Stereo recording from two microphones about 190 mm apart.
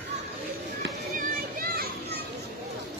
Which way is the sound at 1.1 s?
50° right (ahead or behind).